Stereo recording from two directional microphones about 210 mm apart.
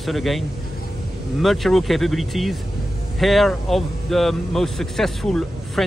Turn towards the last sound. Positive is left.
turn(degrees=0)  # may be behind; listen again after turning